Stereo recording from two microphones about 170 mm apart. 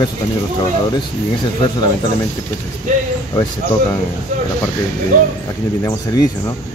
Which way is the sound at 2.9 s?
45° right (ahead or behind).